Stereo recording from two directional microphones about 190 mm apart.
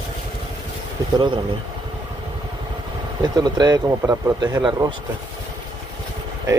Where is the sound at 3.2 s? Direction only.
20° right (ahead or behind).